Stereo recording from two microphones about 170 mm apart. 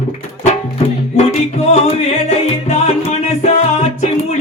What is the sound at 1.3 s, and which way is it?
Music, 40° left (ahead or behind).